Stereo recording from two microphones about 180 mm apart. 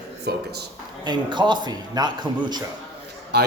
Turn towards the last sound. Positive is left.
turn(degrees=-70)  # may be behind; listen again after turning